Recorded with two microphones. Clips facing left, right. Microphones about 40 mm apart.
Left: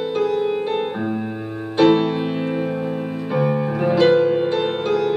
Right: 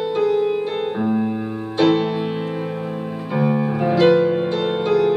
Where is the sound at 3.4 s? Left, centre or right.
Centre.